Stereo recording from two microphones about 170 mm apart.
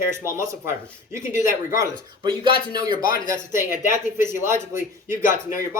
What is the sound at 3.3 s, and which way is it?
Speech, 15° right (ahead or behind).